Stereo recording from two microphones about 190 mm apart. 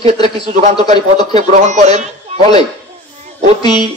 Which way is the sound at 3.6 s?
25° left (ahead or behind).